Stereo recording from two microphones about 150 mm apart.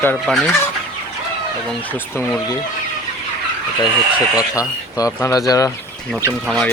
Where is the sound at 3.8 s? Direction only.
25° left (ahead or behind).